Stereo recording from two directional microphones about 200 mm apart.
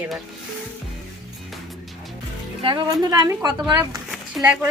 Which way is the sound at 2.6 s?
20° right (ahead or behind).